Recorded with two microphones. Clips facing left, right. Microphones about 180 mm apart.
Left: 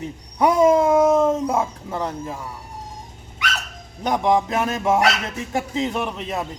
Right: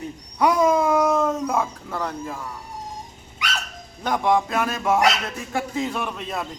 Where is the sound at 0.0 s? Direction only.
25° left (ahead or behind).